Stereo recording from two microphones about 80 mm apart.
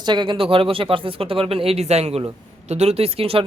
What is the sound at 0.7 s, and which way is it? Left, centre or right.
Speech, right.